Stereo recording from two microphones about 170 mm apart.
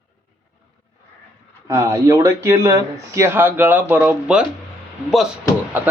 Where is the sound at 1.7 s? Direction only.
20° right (ahead or behind).